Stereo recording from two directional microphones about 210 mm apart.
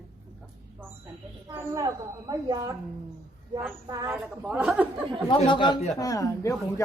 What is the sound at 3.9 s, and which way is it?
Speech, 15° right (ahead or behind).